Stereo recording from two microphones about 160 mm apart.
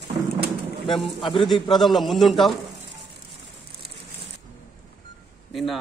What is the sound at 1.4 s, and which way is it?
A man's voice, centre (ahead or behind).